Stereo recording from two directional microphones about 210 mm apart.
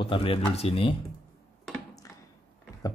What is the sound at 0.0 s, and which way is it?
Speech, 25° left (ahead or behind).